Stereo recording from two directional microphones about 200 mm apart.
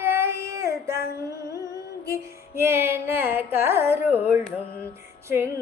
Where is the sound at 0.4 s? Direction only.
15° right (ahead or behind).